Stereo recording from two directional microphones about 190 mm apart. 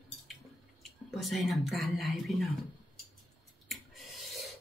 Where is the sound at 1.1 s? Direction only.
Centre (ahead or behind).